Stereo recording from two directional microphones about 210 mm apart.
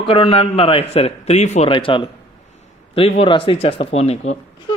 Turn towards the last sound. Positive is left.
turn(degrees=30)  # may be behind; listen again after turning